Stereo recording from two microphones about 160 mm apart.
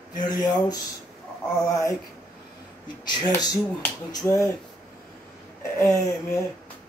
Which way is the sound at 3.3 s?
20° left (ahead or behind).